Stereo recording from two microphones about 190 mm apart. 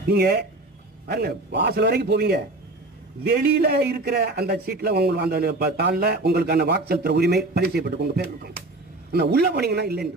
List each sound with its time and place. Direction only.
0.0 s a man's voice: 55° right (ahead or behind)